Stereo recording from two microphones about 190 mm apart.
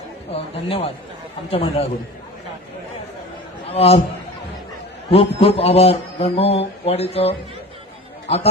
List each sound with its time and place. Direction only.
0.3 s mantra: 30° left (ahead or behind)
1.5 s a man's voice: 30° left (ahead or behind)
3.7 s a man's voice: 30° left (ahead or behind)
5.1 s mantra: 30° left (ahead or behind)